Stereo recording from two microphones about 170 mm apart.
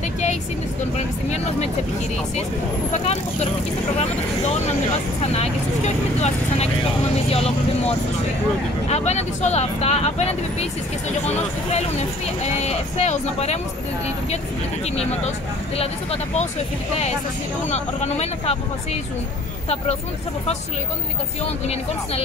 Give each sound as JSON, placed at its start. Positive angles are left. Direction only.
{"t": 0.9, "sound": "speech", "side_deg": 40}
{"t": 2.9, "sound": "speech", "side_deg": 40}
{"t": 5.2, "sound": "speech", "side_deg": 40}
{"t": 15.0, "sound": "speech", "side_deg": 40}
{"t": 17.6, "sound": "speech", "side_deg": 40}